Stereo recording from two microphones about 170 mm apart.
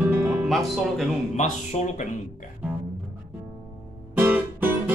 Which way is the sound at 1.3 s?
45° left (ahead or behind).